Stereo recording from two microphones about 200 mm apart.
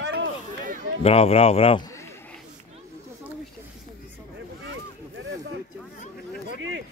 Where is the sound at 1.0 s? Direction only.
30° left (ahead or behind); by 2.2 s 15° left (ahead or behind).